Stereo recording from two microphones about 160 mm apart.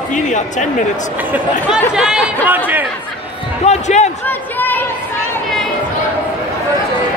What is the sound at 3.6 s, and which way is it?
Speech, 45° left (ahead or behind).